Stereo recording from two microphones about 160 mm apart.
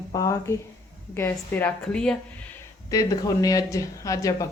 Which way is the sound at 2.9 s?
20° left (ahead or behind).